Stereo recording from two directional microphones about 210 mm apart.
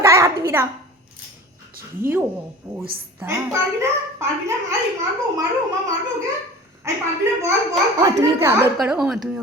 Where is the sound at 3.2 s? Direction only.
15° right (ahead or behind).